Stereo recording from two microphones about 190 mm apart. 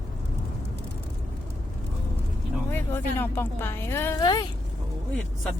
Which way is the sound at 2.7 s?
10° left (ahead or behind).